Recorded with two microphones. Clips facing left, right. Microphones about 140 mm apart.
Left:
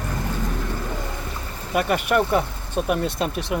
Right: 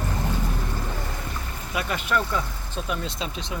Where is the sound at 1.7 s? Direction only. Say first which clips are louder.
Left 6 dB; 60° left (ahead or behind).